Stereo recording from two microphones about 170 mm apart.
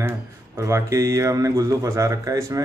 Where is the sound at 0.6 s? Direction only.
20° right (ahead or behind).